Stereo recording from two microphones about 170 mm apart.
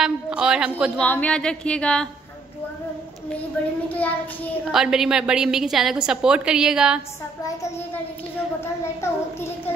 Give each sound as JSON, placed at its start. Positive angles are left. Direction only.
{"t": 0.0, "sound": "a woman's voice", "side_deg": -5}
{"t": 1.0, "sound": "a woman's voice", "side_deg": 10}
{"t": 4.6, "sound": "a woman's voice", "side_deg": -5}
{"t": 7.4, "sound": "a child's voice", "side_deg": 15}